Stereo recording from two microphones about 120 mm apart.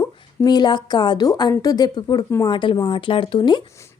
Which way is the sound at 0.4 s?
35° left (ahead or behind).